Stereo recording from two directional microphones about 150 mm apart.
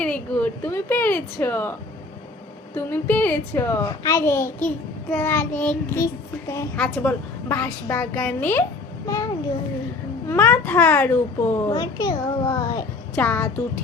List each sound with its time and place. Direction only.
0.0 s a child's voice: 10° left (ahead or behind)
2.7 s a child's voice: 10° left (ahead or behind)
11.7 s a child's voice: 25° left (ahead or behind)
13.1 s a child's voice: 10° left (ahead or behind)